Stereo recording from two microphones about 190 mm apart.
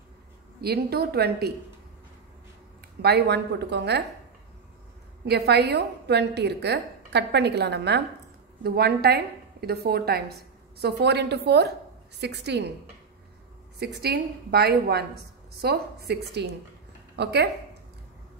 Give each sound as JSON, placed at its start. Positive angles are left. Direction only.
{"t": 0.6, "sound": "a woman's voice", "side_deg": -55}
{"t": 3.0, "sound": "a woman's voice", "side_deg": -60}
{"t": 5.2, "sound": "a woman's voice", "side_deg": -60}
{"t": 14.0, "sound": "a woman's voice", "side_deg": -55}